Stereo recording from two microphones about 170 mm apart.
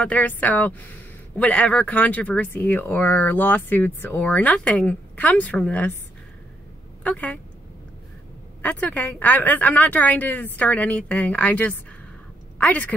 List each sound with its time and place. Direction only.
0.0 s speech: 10° left (ahead or behind)
7.0 s speech: 10° left (ahead or behind)
8.6 s a woman's voice: 10° left (ahead or behind)